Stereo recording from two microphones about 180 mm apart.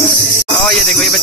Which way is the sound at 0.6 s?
Centre (ahead or behind).